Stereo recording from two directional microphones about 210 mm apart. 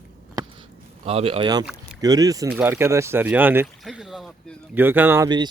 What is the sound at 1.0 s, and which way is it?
Speech, 25° right (ahead or behind).